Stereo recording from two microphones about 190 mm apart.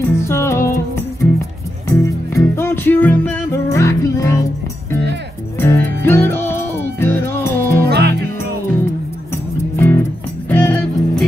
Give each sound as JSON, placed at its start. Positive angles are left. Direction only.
{"t": 0.0, "sound": "music", "side_deg": 15}
{"t": 1.9, "sound": "music", "side_deg": 15}
{"t": 5.6, "sound": "music", "side_deg": 10}
{"t": 7.9, "sound": "music", "side_deg": -60}
{"t": 9.3, "sound": "music", "side_deg": 10}